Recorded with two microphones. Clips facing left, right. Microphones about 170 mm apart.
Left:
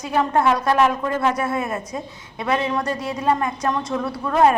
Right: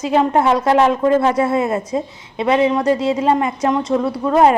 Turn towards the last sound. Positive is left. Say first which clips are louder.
# right 4 dB
turn(degrees=-20)  # may be behind; listen again after turning